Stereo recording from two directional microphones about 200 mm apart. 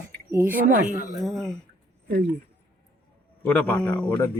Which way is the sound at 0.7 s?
45° right (ahead or behind).